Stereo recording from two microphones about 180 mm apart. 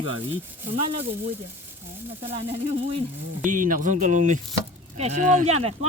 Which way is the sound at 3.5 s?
45° right (ahead or behind).